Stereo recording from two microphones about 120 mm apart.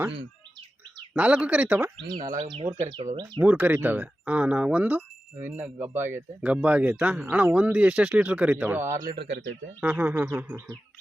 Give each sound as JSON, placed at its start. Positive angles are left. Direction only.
{"t": 1.1, "sound": "speech", "side_deg": -10}
{"t": 2.0, "sound": "speech", "side_deg": -40}
{"t": 2.4, "sound": "speech", "side_deg": -55}
{"t": 3.4, "sound": "speech", "side_deg": -15}